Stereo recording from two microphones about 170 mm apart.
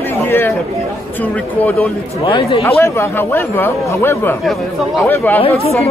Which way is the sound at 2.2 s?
30° left (ahead or behind).